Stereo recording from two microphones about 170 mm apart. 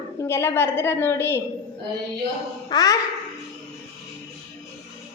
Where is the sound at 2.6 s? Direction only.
20° left (ahead or behind).